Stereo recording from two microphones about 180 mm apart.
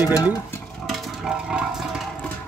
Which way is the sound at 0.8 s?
Centre (ahead or behind).